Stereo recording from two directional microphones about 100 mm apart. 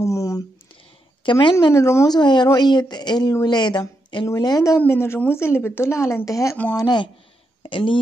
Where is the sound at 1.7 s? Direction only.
30° left (ahead or behind).